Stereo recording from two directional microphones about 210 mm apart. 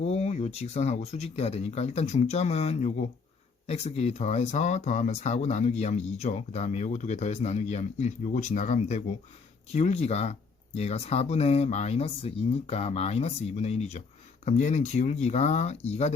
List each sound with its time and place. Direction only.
0.0 s speech: 30° left (ahead or behind)